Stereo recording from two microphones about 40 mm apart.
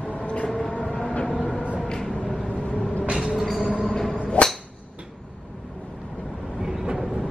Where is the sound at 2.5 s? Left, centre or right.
Left.